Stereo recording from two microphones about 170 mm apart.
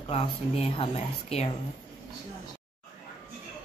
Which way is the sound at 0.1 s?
35° left (ahead or behind).